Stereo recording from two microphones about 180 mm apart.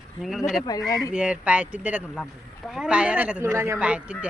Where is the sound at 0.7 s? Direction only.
20° left (ahead or behind).